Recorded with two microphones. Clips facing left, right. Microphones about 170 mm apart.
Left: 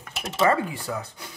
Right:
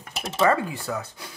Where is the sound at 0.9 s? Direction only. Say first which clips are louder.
Right 1 dB; 20° left (ahead or behind).